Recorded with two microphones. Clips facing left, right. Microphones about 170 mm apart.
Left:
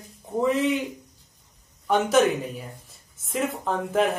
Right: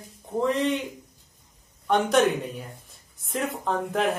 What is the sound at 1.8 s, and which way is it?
Speech, 5° left (ahead or behind).